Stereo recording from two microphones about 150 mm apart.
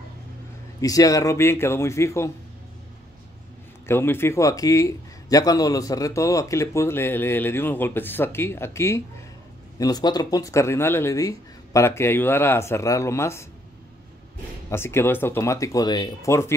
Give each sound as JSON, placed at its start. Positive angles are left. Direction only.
{"t": 0.7, "sound": "speech", "side_deg": 25}
{"t": 3.8, "sound": "a man's voice", "side_deg": 15}
{"t": 14.7, "sound": "speech", "side_deg": 15}